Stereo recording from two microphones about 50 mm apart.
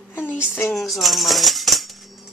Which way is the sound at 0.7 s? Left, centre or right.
Centre.